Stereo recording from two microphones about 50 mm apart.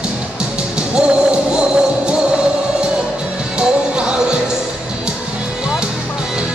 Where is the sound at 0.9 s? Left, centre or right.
Right.